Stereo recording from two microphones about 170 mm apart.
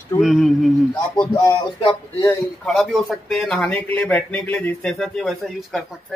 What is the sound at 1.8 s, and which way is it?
Speech, 25° left (ahead or behind).